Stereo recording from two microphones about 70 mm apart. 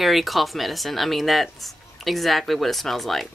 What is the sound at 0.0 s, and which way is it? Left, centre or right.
Speech, centre.